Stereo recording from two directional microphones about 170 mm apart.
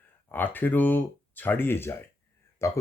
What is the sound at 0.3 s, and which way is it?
Speech, 10° left (ahead or behind).